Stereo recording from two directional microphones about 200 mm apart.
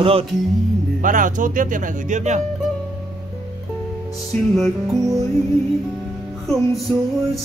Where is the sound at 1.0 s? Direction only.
40° right (ahead or behind).